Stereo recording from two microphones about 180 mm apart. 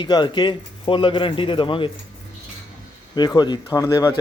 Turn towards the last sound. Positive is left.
turn(degrees=15)  # may be behind; listen again after turning